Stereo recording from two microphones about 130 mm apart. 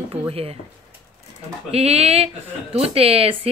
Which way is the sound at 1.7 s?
50° right (ahead or behind).